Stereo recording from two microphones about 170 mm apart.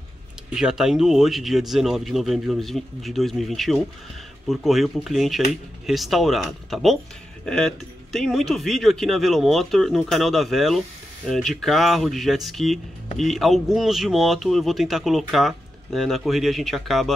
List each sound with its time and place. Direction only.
0.6 s speech: 5° right (ahead or behind)